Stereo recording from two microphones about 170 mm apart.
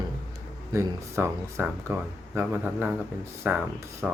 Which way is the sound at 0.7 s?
15° right (ahead or behind).